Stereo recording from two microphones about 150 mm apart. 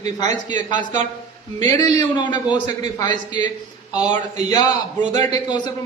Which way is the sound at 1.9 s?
30° left (ahead or behind).